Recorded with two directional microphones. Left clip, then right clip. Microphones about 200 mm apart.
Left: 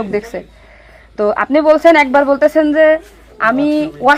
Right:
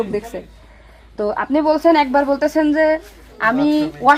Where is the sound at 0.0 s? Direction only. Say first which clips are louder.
Left 3 dB; 40° left (ahead or behind).